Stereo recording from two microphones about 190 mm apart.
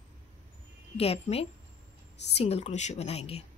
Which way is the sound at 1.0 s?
30° left (ahead or behind).